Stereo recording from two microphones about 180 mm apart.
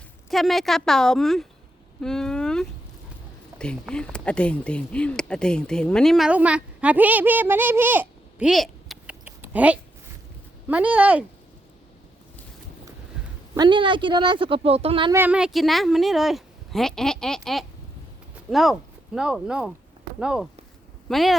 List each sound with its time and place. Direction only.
0.3 s a woman's voice: centre (ahead or behind)
2.0 s a sound: 5° left (ahead or behind)
3.6 s speech: 5° left (ahead or behind)
13.6 s speech: 25° right (ahead or behind)
15.1 s a woman's voice: 10° right (ahead or behind)